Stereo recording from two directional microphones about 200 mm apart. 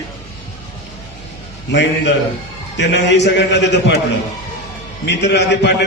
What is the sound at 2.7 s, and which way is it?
A man's voice, 60° left (ahead or behind).